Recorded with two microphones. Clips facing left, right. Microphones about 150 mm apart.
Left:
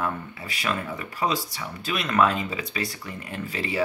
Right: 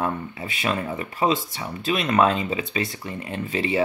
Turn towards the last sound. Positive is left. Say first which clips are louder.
# right 5 dB
turn(degrees=-20)  # may be behind; listen again after turning